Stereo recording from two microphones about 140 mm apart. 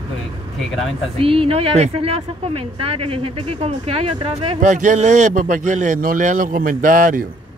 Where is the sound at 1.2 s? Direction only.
40° right (ahead or behind).